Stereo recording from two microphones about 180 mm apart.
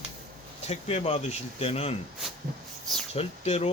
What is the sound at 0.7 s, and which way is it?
Speech, 35° left (ahead or behind).